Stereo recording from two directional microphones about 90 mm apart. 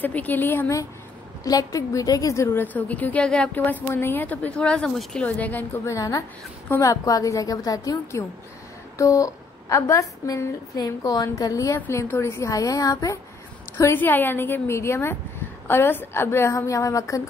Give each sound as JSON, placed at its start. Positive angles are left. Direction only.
{"t": 0.0, "sound": "a woman's voice", "side_deg": 20}
{"t": 1.4, "sound": "a woman's voice", "side_deg": 40}
{"t": 2.6, "sound": "a woman's voice", "side_deg": 20}
{"t": 5.9, "sound": "a woman's voice", "side_deg": 40}